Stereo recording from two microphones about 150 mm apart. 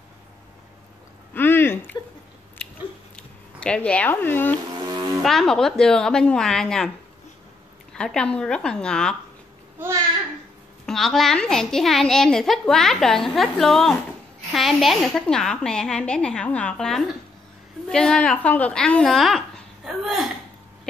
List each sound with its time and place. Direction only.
1.3 s a sound: 15° left (ahead or behind)
3.5 s speech: 5° left (ahead or behind)
4.8 s a sound: 25° right (ahead or behind)
5.2 s a child's voice: centre (ahead or behind)
7.9 s a child's voice: 5° left (ahead or behind)
10.9 s a child's voice: centre (ahead or behind)